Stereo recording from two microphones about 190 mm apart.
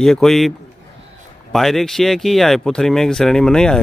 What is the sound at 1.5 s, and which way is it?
Speech, centre (ahead or behind).